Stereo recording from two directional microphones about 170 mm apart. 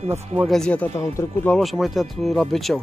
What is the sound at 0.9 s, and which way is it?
Speech, 15° left (ahead or behind).